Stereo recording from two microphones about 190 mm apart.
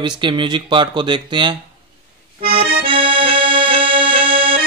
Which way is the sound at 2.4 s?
30° right (ahead or behind).